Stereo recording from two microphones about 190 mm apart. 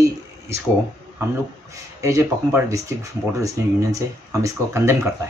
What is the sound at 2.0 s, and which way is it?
Speech, 15° right (ahead or behind).